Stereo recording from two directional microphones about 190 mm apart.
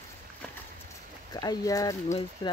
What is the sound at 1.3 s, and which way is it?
Speech, 20° left (ahead or behind).